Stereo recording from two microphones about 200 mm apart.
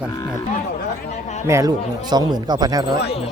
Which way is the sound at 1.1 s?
35° left (ahead or behind).